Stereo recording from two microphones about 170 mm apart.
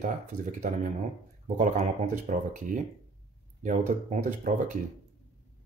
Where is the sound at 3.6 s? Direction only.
45° right (ahead or behind).